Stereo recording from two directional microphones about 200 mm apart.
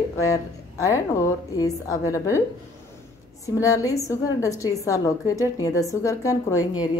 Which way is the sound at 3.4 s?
15° left (ahead or behind).